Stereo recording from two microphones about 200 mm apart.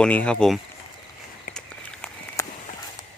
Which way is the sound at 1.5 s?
5° left (ahead or behind).